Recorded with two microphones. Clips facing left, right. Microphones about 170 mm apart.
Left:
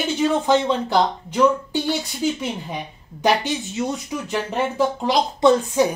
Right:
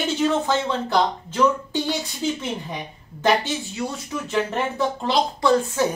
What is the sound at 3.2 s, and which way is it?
A woman's voice, 20° left (ahead or behind).